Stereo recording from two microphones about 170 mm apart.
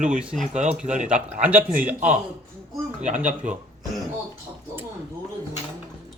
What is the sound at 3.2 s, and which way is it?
Speech, 10° right (ahead or behind).